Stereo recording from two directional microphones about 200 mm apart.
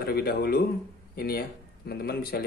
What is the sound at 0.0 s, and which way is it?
Speech, 50° left (ahead or behind).